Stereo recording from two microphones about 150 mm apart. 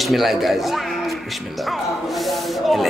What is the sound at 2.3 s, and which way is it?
Snake, centre (ahead or behind).